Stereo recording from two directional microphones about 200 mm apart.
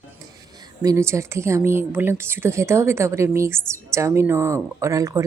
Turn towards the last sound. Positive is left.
turn(degrees=-15)  # may be behind; listen again after turning